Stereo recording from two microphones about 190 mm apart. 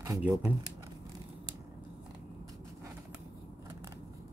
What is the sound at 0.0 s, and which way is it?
Speech, 15° right (ahead or behind).